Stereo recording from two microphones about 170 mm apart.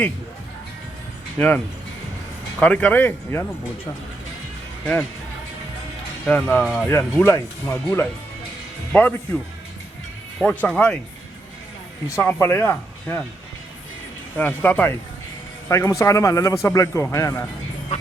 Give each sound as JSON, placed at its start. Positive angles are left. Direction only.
{"t": 1.4, "sound": "speech", "side_deg": 10}
{"t": 6.2, "sound": "speech", "side_deg": 5}
{"t": 12.1, "sound": "speech", "side_deg": 15}
{"t": 14.3, "sound": "speech", "side_deg": 10}